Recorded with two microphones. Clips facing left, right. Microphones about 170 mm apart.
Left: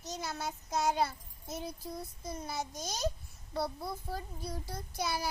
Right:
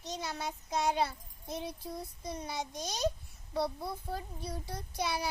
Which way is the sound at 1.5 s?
10° right (ahead or behind).